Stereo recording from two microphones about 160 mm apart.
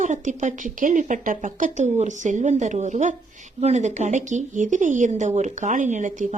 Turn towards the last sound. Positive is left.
turn(degrees=-50)  # may be behind; listen again after turning